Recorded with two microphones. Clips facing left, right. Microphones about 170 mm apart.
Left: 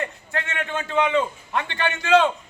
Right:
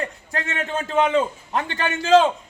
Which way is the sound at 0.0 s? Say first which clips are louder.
Right 1 dB; 40° right (ahead or behind).